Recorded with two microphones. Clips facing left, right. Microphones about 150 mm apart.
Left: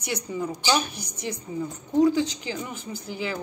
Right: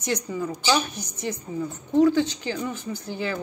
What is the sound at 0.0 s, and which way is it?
A woman's voice, 15° left (ahead or behind).